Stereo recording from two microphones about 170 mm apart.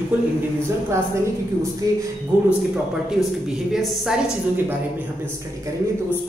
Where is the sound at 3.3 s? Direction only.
Centre (ahead or behind).